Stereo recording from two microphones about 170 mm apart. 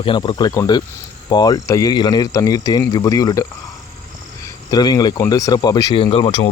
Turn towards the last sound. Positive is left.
turn(degrees=35)  # may be behind; listen again after turning